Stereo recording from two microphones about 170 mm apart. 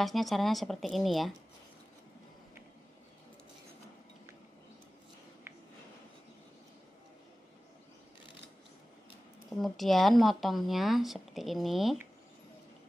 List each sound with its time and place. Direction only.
0.0 s speech: centre (ahead or behind)
9.5 s speech: centre (ahead or behind)